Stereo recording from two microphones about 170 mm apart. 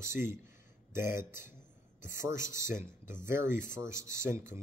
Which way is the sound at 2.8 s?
15° right (ahead or behind).